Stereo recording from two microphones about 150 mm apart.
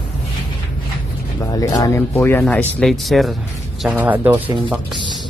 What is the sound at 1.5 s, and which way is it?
Speech, 25° left (ahead or behind).